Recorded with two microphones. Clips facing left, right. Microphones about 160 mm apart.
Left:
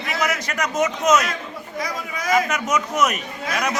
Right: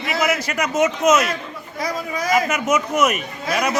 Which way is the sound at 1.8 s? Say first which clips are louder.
Right 5 dB; 35° right (ahead or behind).